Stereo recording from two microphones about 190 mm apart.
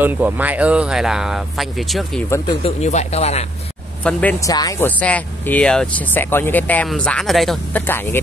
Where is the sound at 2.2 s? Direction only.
15° left (ahead or behind).